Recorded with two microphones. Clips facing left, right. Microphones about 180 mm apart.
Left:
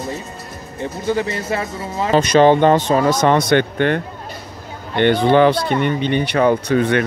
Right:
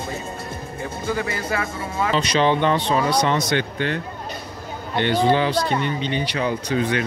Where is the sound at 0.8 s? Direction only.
25° left (ahead or behind).